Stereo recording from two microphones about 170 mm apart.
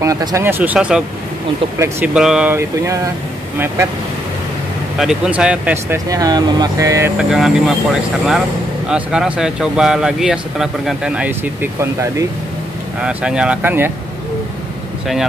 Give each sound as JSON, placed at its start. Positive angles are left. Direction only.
{"t": 0.0, "sound": "speech", "side_deg": -20}
{"t": 4.9, "sound": "speech", "side_deg": -5}
{"t": 6.0, "sound": "speech", "side_deg": -20}
{"t": 7.2, "sound": "speech", "side_deg": 0}
{"t": 13.0, "sound": "speech", "side_deg": -5}